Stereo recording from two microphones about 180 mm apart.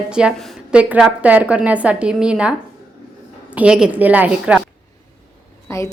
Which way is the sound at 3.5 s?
5° right (ahead or behind).